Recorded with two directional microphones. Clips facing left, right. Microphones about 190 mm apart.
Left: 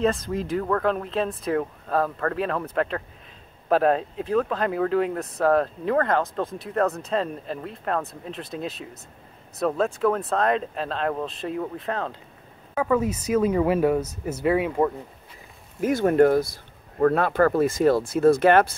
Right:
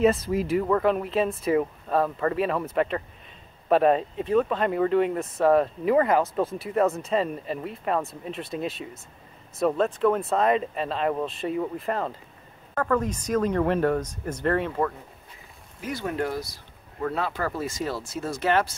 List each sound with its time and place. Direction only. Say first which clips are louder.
0.0 s speech: right 2 dB; 5° right (ahead or behind)
12.7 s speech: left 2 dB; 5° left (ahead or behind)
15.8 s speech: left 11 dB; 50° left (ahead or behind)